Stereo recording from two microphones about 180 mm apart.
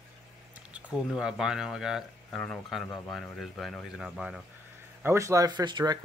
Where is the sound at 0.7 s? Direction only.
5° right (ahead or behind).